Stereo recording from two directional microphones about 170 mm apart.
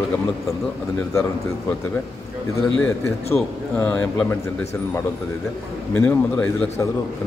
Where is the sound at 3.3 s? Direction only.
10° left (ahead or behind).